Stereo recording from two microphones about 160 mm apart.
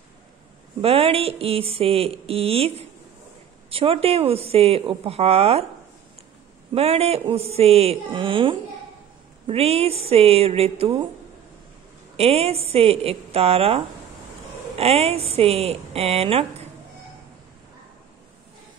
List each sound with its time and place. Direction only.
0.7 s speech: 35° right (ahead or behind)
6.7 s speech: 40° right (ahead or behind)
12.2 s speech: 40° right (ahead or behind)